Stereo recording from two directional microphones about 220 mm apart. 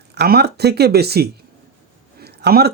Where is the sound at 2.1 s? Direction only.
45° right (ahead or behind).